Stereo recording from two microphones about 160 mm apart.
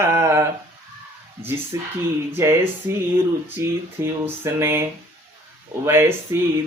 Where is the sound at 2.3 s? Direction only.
15° right (ahead or behind).